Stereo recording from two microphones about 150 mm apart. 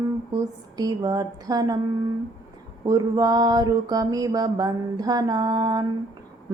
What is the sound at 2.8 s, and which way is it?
Mantra, 25° right (ahead or behind).